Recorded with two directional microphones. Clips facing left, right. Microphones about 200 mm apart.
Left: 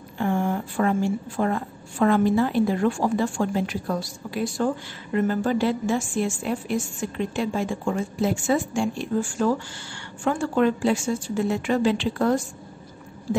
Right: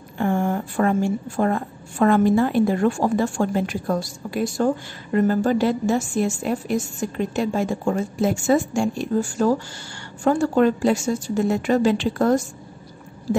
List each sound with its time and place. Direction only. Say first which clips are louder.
0.2 s a woman's voice: right 2 dB; 50° right (ahead or behind)